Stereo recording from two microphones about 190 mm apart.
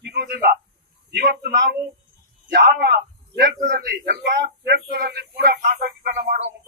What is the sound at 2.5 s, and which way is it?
A man's voice, 60° right (ahead or behind).